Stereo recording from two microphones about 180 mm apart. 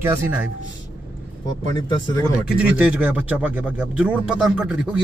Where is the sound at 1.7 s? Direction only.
20° left (ahead or behind).